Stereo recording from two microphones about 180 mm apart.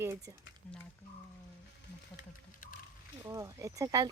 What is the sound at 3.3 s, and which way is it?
Speech, 15° right (ahead or behind).